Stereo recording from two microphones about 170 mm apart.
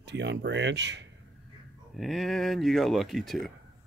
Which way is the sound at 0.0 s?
90° right.